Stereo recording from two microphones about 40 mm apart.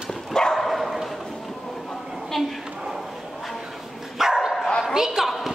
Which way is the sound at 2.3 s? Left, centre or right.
Centre.